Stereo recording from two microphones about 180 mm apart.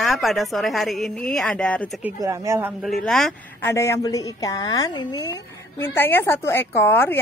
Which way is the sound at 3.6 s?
15° left (ahead or behind).